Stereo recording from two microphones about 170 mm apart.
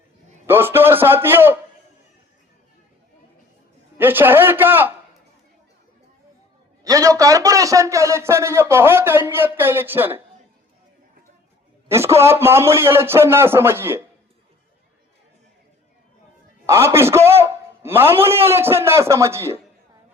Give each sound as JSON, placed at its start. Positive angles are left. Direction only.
{"t": 0.4, "sound": "a man's voice", "side_deg": -15}
{"t": 3.9, "sound": "a man's voice", "side_deg": -10}
{"t": 6.8, "sound": "a man's voice", "side_deg": -20}
{"t": 11.9, "sound": "a man's voice", "side_deg": -15}
{"t": 16.6, "sound": "a man's voice", "side_deg": -15}